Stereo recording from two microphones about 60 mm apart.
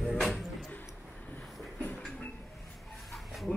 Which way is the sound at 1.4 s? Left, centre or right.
Centre.